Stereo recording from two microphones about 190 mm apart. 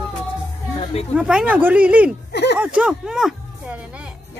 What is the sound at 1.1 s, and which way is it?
Speech, 5° right (ahead or behind).